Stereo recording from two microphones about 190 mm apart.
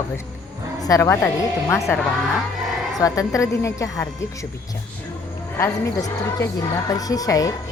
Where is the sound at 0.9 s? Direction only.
15° left (ahead or behind).